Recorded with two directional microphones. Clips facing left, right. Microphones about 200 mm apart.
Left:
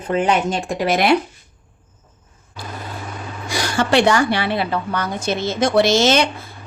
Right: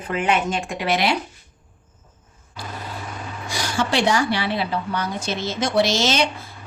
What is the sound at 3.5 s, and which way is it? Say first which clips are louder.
A woman's voice: left 6 dB; 65° left (ahead or behind).